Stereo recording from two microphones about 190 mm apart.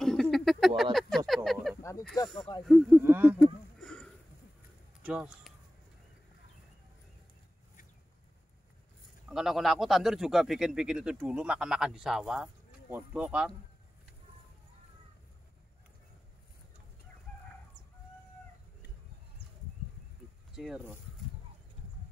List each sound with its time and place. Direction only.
0.0 s a sound: 5° left (ahead or behind)
1.8 s a sound: 15° left (ahead or behind)
2.6 s a man's voice: centre (ahead or behind)
3.0 s speech: 10° right (ahead or behind)
3.7 s sniff: 5° left (ahead or behind)
5.0 s speech: 5° right (ahead or behind)
9.3 s a man's voice: centre (ahead or behind)
20.5 s speech: centre (ahead or behind)